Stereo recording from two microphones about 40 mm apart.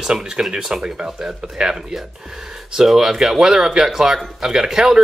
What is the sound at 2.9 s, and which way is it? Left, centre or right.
Speech, centre.